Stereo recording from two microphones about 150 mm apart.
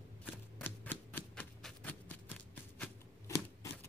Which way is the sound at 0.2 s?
10° left (ahead or behind).